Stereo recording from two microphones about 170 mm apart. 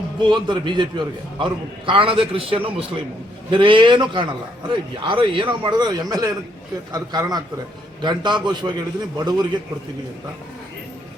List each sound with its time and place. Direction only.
0.2 s a man's voice: 25° right (ahead or behind)